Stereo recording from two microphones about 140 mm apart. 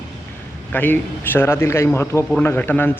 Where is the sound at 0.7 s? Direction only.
15° left (ahead or behind).